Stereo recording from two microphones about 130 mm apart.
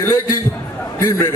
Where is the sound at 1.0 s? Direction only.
20° left (ahead or behind).